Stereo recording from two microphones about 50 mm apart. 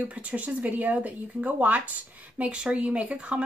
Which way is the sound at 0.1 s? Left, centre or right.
Right.